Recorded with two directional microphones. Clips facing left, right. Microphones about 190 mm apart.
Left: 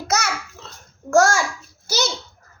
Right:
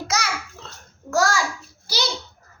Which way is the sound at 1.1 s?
50° left (ahead or behind).